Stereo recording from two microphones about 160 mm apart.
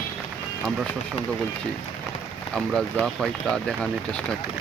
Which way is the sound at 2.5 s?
5° left (ahead or behind).